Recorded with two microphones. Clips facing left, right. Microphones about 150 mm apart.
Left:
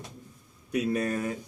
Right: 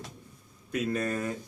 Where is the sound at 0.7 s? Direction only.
10° left (ahead or behind).